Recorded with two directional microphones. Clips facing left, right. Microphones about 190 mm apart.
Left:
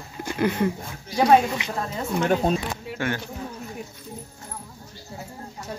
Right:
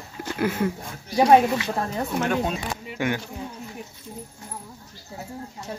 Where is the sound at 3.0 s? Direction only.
15° right (ahead or behind).